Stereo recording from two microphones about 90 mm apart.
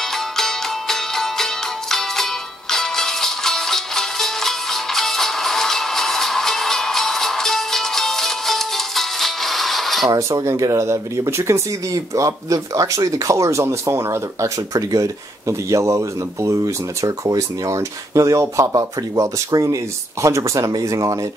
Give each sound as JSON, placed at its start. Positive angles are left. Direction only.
{"t": 0.0, "sound": "music", "side_deg": 5}
{"t": 10.1, "sound": "speech", "side_deg": -35}